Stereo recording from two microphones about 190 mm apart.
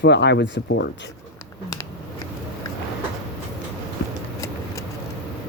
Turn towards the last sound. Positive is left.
turn(degrees=15)  # may be behind; listen again after turning